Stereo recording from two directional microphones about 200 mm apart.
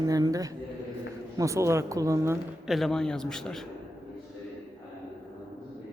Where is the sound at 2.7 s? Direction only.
Centre (ahead or behind).